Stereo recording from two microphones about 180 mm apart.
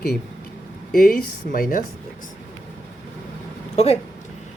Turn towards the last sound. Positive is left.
turn(degrees=35)  # may be behind; listen again after turning